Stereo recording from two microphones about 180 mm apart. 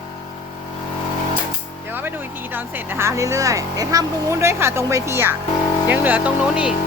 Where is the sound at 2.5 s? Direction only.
10° right (ahead or behind).